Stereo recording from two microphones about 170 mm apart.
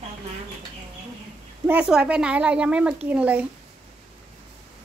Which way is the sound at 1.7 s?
5° right (ahead or behind).